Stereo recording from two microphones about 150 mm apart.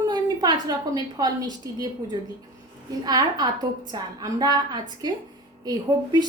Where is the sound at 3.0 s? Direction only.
25° right (ahead or behind).